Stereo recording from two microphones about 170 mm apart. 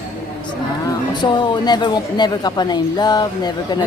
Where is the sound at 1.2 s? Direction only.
25° left (ahead or behind).